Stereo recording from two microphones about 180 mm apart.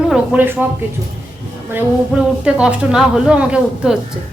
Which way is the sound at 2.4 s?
5° right (ahead or behind).